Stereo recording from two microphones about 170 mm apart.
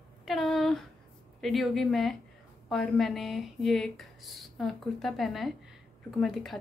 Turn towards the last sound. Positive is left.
turn(degrees=0)  # may be behind; listen again after turning